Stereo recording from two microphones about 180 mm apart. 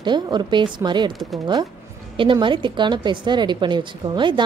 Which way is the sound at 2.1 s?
25° right (ahead or behind).